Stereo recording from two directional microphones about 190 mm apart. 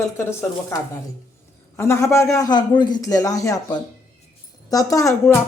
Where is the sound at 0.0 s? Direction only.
15° left (ahead or behind).